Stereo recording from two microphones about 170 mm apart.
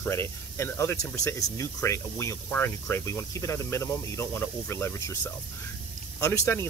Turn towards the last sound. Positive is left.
turn(degrees=15)  # may be behind; listen again after turning